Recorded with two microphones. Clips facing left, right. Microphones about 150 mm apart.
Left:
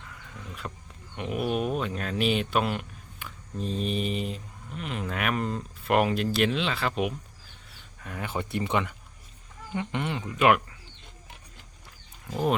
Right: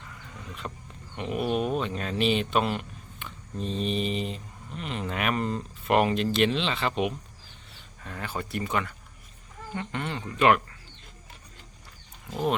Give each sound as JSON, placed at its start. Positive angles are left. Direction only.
{"t": 0.0, "sound": "a sound", "side_deg": 0}
{"t": 1.1, "sound": "speech", "side_deg": 0}
{"t": 8.0, "sound": "speech", "side_deg": 15}
{"t": 12.3, "sound": "speech", "side_deg": 0}